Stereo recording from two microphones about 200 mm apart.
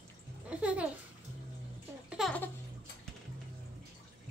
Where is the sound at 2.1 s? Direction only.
Centre (ahead or behind).